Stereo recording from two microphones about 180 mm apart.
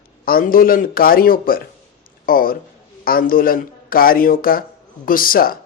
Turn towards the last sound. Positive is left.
turn(degrees=55)  # may be behind; listen again after turning